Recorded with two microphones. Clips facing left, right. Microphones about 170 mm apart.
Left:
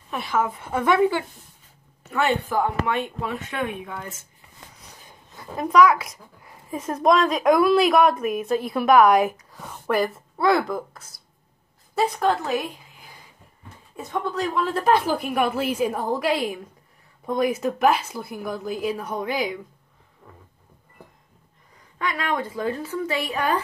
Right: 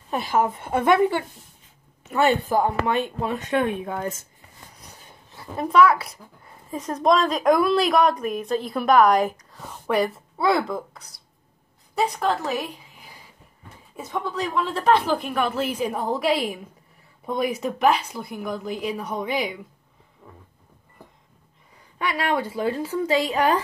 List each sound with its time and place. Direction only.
0.5 s a woman's voice: 20° right (ahead or behind)
2.2 s speech: 40° right (ahead or behind)
6.7 s a woman's voice: centre (ahead or behind)
22.1 s speech: 35° right (ahead or behind)
22.5 s a woman's voice: 10° right (ahead or behind)